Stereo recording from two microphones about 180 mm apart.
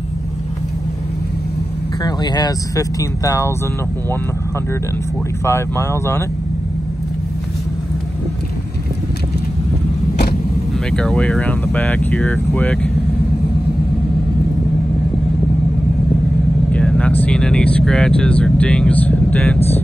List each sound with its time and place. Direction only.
2.0 s speech: 20° left (ahead or behind)
5.4 s speech: 15° left (ahead or behind)
10.9 s speech: 5° left (ahead or behind)
16.7 s vehicle: 5° left (ahead or behind)
17.2 s speech: 5° left (ahead or behind)